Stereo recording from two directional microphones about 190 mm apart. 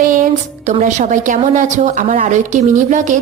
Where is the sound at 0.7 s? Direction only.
40° right (ahead or behind).